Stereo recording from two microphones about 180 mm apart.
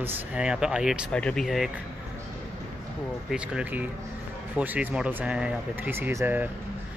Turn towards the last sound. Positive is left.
turn(degrees=-10)  # may be behind; listen again after turning